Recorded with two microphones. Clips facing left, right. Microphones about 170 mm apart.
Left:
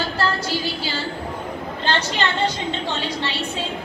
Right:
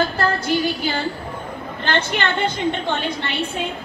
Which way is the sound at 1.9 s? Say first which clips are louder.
Right 1 dB; 55° right (ahead or behind).